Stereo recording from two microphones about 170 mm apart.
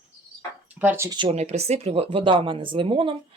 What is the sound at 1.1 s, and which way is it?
Speech, 30° right (ahead or behind).